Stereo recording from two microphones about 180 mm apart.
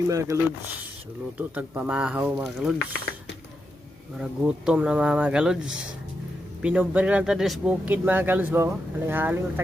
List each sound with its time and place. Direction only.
0.1 s speech: 15° right (ahead or behind)
1.4 s speech: 10° right (ahead or behind)
4.2 s speech: 5° right (ahead or behind)